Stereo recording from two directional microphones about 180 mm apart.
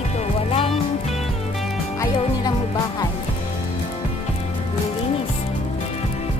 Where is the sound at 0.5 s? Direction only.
30° left (ahead or behind).